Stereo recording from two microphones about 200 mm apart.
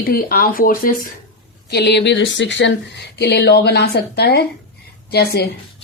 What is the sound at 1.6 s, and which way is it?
A woman's voice, 55° left (ahead or behind).